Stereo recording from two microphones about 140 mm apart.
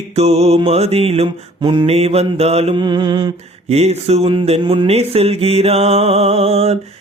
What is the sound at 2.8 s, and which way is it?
Mantra, 35° right (ahead or behind).